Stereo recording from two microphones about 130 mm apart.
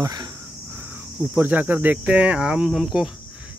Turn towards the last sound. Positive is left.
turn(degrees=0)  # may be behind; listen again after turning